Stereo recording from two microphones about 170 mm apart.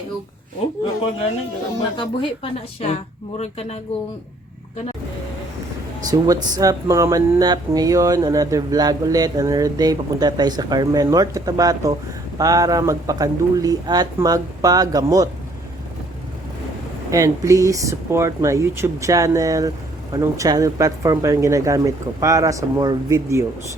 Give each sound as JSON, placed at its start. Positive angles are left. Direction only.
{"t": 2.0, "sound": "speech", "side_deg": 35}
{"t": 6.1, "sound": "speech", "side_deg": -20}
{"t": 17.1, "sound": "speech", "side_deg": -20}